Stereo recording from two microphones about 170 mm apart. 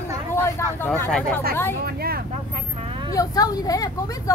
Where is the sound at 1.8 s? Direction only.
65° right (ahead or behind).